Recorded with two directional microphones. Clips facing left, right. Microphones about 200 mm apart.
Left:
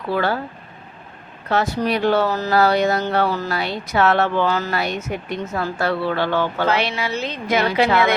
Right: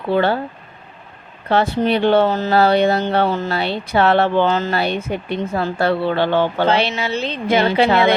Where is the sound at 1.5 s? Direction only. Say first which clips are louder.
Right 4 dB; 30° right (ahead or behind).